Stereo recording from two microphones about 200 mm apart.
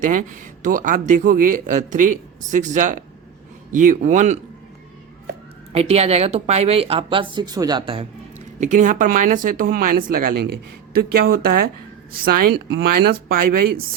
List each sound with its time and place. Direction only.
0.0 s a man's voice: 40° right (ahead or behind)
5.7 s speech: 30° right (ahead or behind)
8.6 s speech: 40° right (ahead or behind)